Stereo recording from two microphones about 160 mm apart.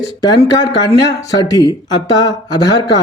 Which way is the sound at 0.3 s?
25° left (ahead or behind).